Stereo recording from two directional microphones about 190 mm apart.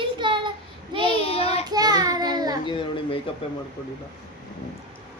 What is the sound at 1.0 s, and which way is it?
Child singing, 30° left (ahead or behind).